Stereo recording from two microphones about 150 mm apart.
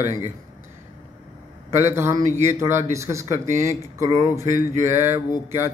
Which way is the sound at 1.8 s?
15° right (ahead or behind).